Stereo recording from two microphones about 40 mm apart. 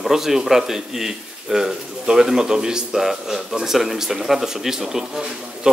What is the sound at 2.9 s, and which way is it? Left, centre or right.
A man's voice, centre.